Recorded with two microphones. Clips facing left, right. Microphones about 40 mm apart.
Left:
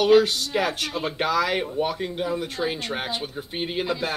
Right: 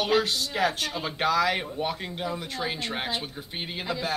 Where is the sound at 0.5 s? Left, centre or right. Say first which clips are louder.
Left 2 dB; centre.